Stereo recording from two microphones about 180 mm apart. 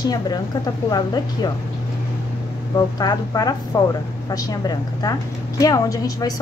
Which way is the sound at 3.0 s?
20° left (ahead or behind).